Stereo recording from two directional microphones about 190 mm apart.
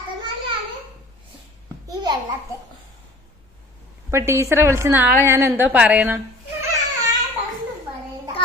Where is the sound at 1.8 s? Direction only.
20° right (ahead or behind).